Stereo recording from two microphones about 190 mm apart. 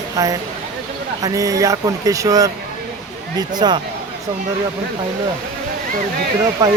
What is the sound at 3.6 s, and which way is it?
Speech, 20° right (ahead or behind).